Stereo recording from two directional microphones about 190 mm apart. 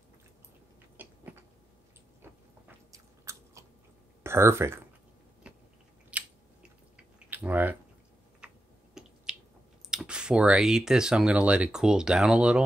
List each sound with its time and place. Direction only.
0.9 s a sound: 10° right (ahead or behind)
2.9 s biting: 15° right (ahead or behind)
4.2 s speech: 15° right (ahead or behind)
5.4 s biting: 5° right (ahead or behind)
6.1 s chewing: 5° right (ahead or behind)
7.2 s a sound: 10° right (ahead or behind)
8.4 s tick-tock: 5° right (ahead or behind)
8.9 s finger snapping: 5° right (ahead or behind)
9.8 s speech: 5° right (ahead or behind)